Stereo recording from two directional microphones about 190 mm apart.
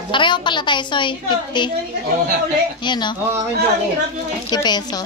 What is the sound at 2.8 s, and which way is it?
Speech, 25° left (ahead or behind).